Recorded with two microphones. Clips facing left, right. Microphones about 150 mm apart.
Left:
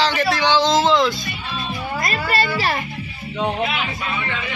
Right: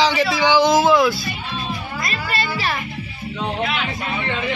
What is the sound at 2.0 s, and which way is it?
Music, 40° left (ahead or behind).